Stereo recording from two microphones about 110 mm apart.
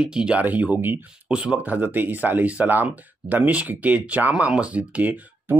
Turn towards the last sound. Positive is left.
turn(degrees=-15)  # may be behind; listen again after turning